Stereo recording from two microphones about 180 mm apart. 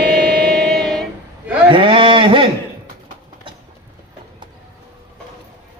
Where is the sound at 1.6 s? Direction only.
30° right (ahead or behind).